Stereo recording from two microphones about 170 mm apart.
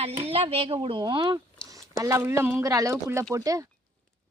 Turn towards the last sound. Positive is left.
turn(degrees=-20)  # may be behind; listen again after turning